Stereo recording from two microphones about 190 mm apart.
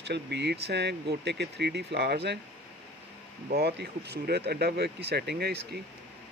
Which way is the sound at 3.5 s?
60° right (ahead or behind).